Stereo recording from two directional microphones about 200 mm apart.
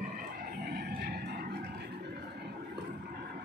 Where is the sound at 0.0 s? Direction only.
45° right (ahead or behind).